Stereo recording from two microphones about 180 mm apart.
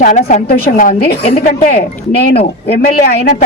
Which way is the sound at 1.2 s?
35° left (ahead or behind).